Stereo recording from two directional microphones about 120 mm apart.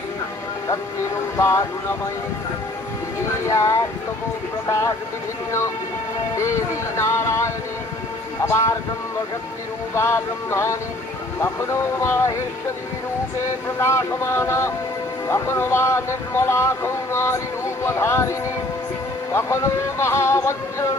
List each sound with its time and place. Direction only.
1.4 s speech: 25° left (ahead or behind)
3.4 s speech: 25° left (ahead or behind)
5.5 s speech: 25° left (ahead or behind)
9.9 s speech: 20° left (ahead or behind)
13.4 s speech: 25° left (ahead or behind)